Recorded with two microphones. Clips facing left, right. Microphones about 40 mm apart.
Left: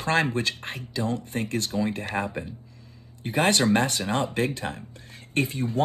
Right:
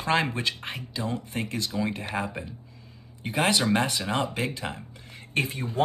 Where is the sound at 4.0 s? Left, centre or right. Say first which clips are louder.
Left 2 dB; right.